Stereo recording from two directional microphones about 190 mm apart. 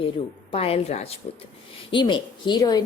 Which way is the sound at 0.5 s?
30° left (ahead or behind).